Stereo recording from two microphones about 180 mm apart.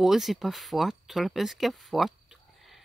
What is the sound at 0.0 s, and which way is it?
Speech, centre (ahead or behind).